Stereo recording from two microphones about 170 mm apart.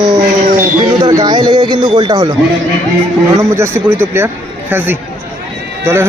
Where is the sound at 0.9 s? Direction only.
25° right (ahead or behind).